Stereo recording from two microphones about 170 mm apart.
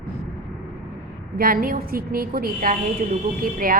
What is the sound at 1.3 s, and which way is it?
A woman's voice, 55° right (ahead or behind).